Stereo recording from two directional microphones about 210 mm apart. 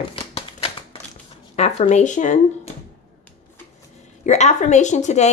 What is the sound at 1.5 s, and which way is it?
Speech, 30° left (ahead or behind).